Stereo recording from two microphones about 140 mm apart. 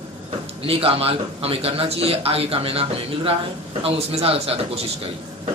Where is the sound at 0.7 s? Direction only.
45° right (ahead or behind).